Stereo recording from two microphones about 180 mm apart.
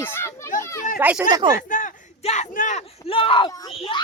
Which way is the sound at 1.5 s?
50° left (ahead or behind).